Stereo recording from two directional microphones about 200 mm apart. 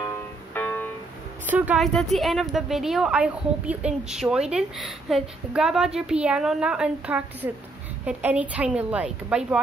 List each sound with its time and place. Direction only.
0.6 s music: 10° left (ahead or behind)
1.4 s a woman's voice: 5° right (ahead or behind)